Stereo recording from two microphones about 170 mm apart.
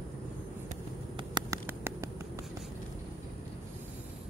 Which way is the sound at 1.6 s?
15° right (ahead or behind).